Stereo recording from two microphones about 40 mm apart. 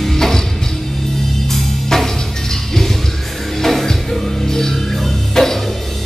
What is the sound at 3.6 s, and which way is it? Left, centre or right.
Music, centre.